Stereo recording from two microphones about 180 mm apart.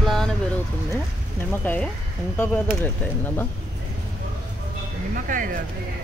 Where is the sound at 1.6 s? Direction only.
10° left (ahead or behind).